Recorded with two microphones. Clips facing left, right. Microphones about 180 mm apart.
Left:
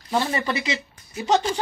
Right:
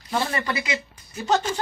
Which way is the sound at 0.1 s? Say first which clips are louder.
Left 2 dB; 25° left (ahead or behind).